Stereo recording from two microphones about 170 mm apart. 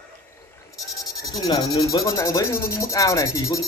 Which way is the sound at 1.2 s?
25° left (ahead or behind).